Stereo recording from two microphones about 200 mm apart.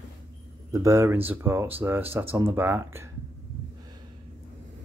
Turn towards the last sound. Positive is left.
turn(degrees=-10)  # may be behind; listen again after turning